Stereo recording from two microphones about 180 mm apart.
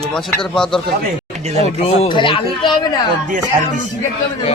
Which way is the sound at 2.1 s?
30° left (ahead or behind).